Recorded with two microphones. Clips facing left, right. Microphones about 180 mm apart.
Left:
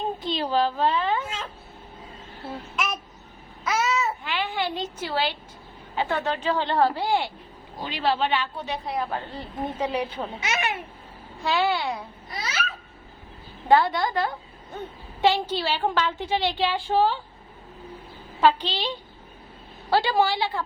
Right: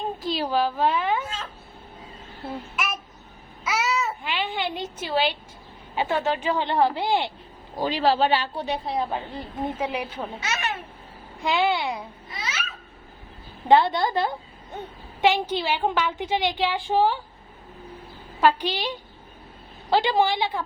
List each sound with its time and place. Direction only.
0.2 s a woman's voice: 5° right (ahead or behind)
3.6 s babbling: 5° right (ahead or behind)
4.3 s a sound: 20° right (ahead or behind)
4.9 s a woman's voice: 20° right (ahead or behind)
6.0 s a woman's voice: 10° right (ahead or behind)
7.8 s a woman's voice: 40° right (ahead or behind)
9.0 s a woman's voice: 15° right (ahead or behind)
10.2 s speech: 15° left (ahead or behind)
11.4 s a woman's voice: 15° right (ahead or behind)
12.3 s babbling: 40° left (ahead or behind)
13.7 s a woman's voice: 25° right (ahead or behind)
15.2 s a woman's voice: 15° right (ahead or behind)
18.3 s a woman's voice: 10° right (ahead or behind)